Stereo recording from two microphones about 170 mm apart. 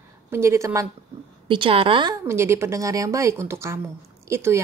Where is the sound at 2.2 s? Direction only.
15° right (ahead or behind).